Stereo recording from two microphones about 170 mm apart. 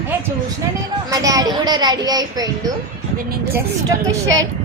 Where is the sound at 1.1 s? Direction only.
20° right (ahead or behind).